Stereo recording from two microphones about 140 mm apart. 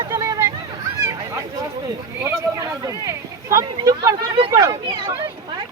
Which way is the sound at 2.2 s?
25° right (ahead or behind).